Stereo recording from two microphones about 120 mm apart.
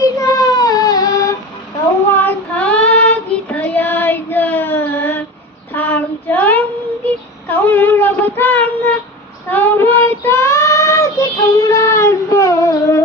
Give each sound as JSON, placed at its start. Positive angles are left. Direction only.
{"t": 0.0, "sound": "child singing", "side_deg": 30}
{"t": 2.1, "sound": "child singing", "side_deg": 15}